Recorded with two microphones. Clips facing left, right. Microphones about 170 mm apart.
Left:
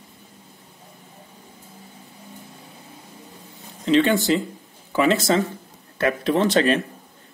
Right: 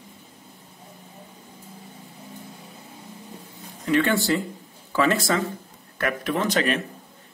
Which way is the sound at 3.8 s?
20° left (ahead or behind).